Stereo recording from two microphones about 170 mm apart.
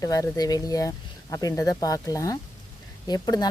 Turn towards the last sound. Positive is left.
turn(degrees=25)  # may be behind; listen again after turning